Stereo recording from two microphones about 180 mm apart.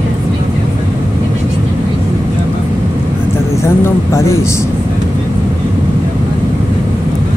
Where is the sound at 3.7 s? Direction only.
15° left (ahead or behind).